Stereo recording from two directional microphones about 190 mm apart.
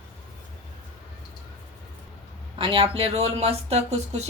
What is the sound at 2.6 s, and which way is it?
Speech, 30° right (ahead or behind).